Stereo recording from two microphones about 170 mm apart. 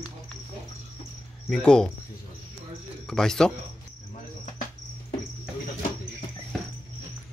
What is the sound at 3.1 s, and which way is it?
Speech, 5° left (ahead or behind).